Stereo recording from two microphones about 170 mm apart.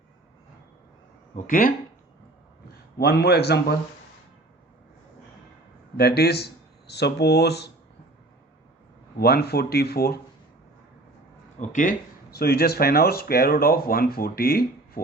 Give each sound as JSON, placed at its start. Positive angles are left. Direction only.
{"t": 1.5, "sound": "speech", "side_deg": 55}
{"t": 3.0, "sound": "speech", "side_deg": 70}
{"t": 6.0, "sound": "speech", "side_deg": 70}
{"t": 9.1, "sound": "speech", "side_deg": 65}
{"t": 11.7, "sound": "speech", "side_deg": 50}